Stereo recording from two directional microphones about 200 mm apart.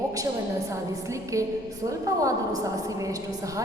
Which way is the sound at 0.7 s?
15° right (ahead or behind).